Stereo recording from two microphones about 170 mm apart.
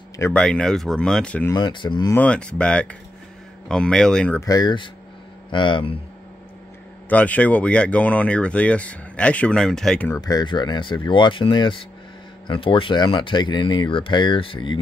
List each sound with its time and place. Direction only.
0.2 s speech: 5° left (ahead or behind)
1.5 s speech: 25° left (ahead or behind)
2.1 s speech: 5° left (ahead or behind)
4.4 s speech: 20° left (ahead or behind)
7.1 s speech: 10° left (ahead or behind)
10.2 s speech: 25° left (ahead or behind)